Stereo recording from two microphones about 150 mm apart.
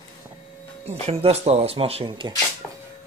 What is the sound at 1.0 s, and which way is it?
Speech, 45° right (ahead or behind).